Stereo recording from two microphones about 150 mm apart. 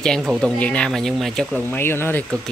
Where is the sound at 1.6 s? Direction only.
15° left (ahead or behind).